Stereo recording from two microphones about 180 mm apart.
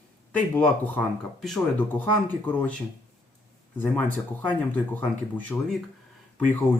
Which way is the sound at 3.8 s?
10° left (ahead or behind).